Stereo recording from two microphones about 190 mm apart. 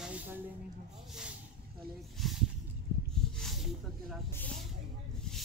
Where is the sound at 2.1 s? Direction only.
Centre (ahead or behind).